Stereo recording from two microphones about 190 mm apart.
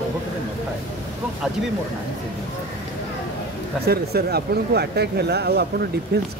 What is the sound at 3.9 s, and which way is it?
Speech, 55° right (ahead or behind).